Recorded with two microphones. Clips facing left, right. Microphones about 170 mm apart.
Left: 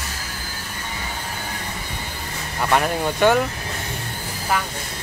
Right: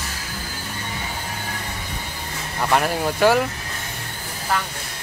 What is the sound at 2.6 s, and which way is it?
Speech, centre (ahead or behind).